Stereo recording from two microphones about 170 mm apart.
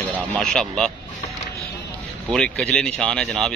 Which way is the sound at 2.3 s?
5° left (ahead or behind).